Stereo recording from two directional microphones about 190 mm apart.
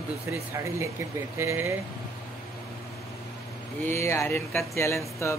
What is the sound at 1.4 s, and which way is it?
Speech, 15° right (ahead or behind).